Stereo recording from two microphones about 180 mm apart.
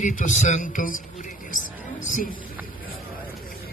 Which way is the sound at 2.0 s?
45° left (ahead or behind).